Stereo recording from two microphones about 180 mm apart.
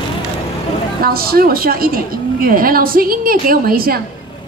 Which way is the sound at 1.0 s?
55° right (ahead or behind).